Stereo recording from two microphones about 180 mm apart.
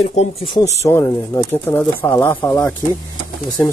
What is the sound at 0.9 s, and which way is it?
Speech, 15° left (ahead or behind).